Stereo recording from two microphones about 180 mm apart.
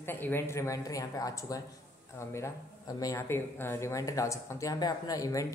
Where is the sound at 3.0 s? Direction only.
15° left (ahead or behind).